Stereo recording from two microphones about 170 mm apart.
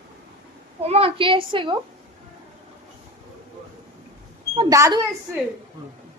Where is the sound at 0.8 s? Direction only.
35° right (ahead or behind).